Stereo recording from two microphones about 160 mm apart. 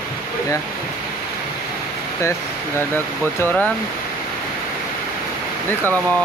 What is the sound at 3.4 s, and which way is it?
Speech, 10° left (ahead or behind).